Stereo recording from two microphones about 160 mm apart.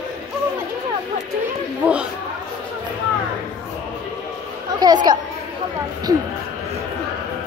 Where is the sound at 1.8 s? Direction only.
10° right (ahead or behind).